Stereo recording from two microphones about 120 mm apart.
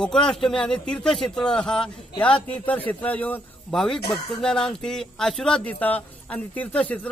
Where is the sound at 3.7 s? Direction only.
Centre (ahead or behind).